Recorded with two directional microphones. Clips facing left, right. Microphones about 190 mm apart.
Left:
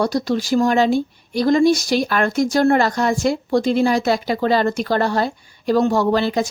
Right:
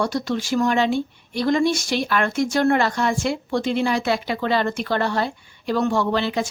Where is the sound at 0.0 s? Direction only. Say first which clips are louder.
Left 4 dB; 35° left (ahead or behind).